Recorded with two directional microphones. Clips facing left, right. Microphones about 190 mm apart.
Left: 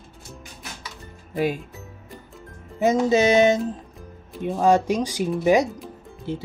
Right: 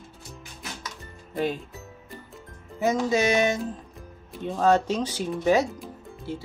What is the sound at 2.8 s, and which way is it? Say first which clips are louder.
Music: left 5 dB; 25° left (ahead or behind).